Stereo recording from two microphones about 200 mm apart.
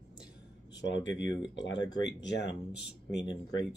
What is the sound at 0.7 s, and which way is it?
Speech, 65° left (ahead or behind).